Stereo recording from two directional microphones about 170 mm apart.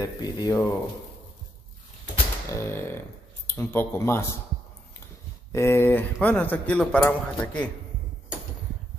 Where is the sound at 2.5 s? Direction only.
15° left (ahead or behind).